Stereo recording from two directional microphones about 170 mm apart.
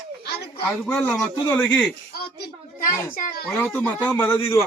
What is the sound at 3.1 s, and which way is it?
Speech, 60° left (ahead or behind).